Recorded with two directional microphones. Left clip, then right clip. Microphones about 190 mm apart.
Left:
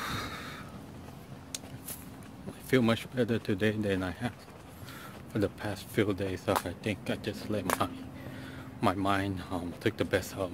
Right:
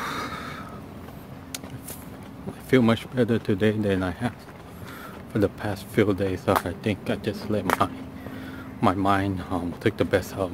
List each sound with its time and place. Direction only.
0.0 s a sound: 5° right (ahead or behind)
2.7 s speech: centre (ahead or behind)
5.3 s speech: 5° right (ahead or behind)